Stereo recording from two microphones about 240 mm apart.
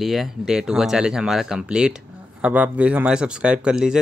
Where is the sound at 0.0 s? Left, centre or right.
Centre.